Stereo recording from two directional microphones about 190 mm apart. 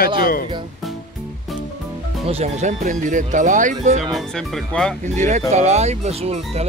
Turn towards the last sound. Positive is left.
turn(degrees=-35)  # may be behind; listen again after turning